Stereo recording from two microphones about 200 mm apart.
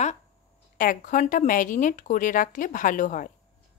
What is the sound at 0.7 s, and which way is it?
Speech, 45° left (ahead or behind).